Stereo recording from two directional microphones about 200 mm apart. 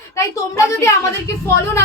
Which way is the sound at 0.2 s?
15° left (ahead or behind).